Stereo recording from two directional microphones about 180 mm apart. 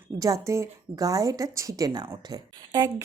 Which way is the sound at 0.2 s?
20° right (ahead or behind).